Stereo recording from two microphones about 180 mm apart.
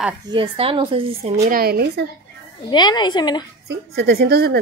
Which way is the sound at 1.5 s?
55° right (ahead or behind).